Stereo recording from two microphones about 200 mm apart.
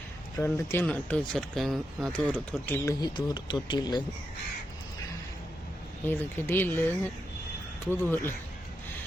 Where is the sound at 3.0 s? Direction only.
20° left (ahead or behind).